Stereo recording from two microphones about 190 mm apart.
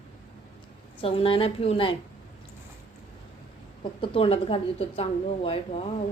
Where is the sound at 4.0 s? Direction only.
30° left (ahead or behind).